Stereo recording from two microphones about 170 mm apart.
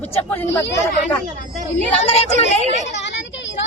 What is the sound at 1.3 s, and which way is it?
Speech, 50° right (ahead or behind).